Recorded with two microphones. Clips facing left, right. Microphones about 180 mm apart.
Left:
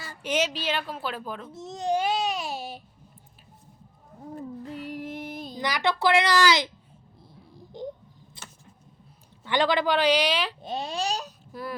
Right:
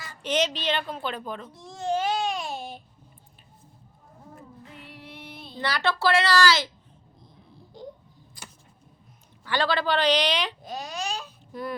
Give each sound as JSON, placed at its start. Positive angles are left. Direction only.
{"t": 0.2, "sound": "a woman's voice", "side_deg": 10}
{"t": 1.5, "sound": "babbling", "side_deg": 20}
{"t": 4.4, "sound": "a sound", "side_deg": 40}
{"t": 5.5, "sound": "speech", "side_deg": 15}
{"t": 7.7, "sound": "a sound", "side_deg": 20}
{"t": 9.4, "sound": "speech", "side_deg": 20}
{"t": 10.6, "sound": "babbling", "side_deg": 25}